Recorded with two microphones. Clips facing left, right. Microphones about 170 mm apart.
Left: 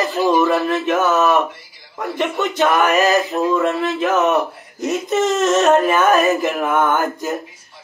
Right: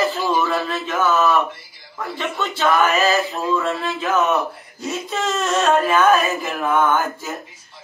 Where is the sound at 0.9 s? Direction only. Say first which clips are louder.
Left 2 dB; 20° left (ahead or behind).